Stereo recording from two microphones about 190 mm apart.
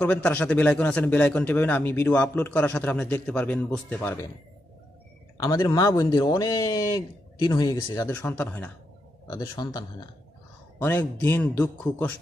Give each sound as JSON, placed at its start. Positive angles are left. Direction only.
{"t": 0.0, "sound": "a man's voice", "side_deg": 5}
{"t": 5.4, "sound": "a man's voice", "side_deg": 20}
{"t": 10.8, "sound": "a man's voice", "side_deg": 10}